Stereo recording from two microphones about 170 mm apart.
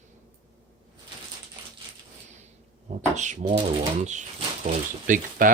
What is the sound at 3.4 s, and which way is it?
Speech, 30° right (ahead or behind).